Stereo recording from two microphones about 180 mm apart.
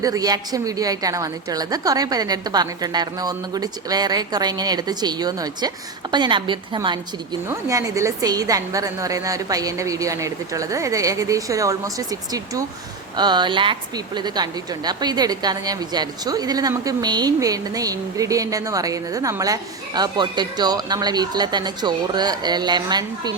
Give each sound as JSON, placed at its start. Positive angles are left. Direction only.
{"t": 0.0, "sound": "speech", "side_deg": -20}